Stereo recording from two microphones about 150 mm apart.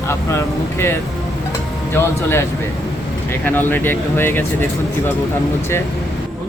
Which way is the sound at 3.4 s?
10° left (ahead or behind).